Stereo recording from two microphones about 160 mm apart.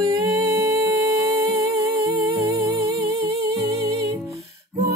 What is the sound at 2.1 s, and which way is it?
Music, 25° right (ahead or behind).